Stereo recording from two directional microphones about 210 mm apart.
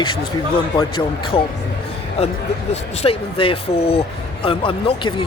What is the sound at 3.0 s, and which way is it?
Speech, 25° left (ahead or behind).